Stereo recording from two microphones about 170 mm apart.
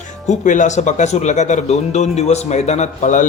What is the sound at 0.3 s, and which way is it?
Speech, 45° left (ahead or behind).